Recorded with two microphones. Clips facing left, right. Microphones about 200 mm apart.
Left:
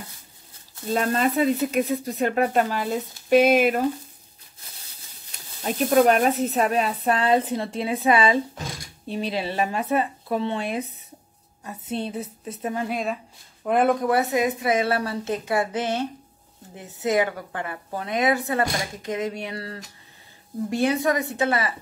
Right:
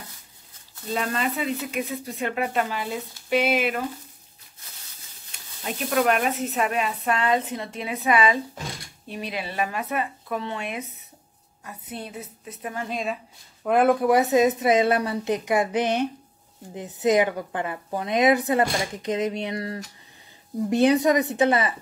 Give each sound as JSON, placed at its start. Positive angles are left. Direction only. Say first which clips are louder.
{"t": 0.9, "sound": "speech", "louder": "left 5 dB", "side_deg": 40}
{"t": 5.6, "sound": "speech", "louder": "left 6 dB", "side_deg": 40}
{"t": 12.8, "sound": "speech", "louder": "left 2 dB", "side_deg": 0}
{"t": 14.0, "sound": "a woman's voice", "louder": "right 3 dB", "side_deg": -15}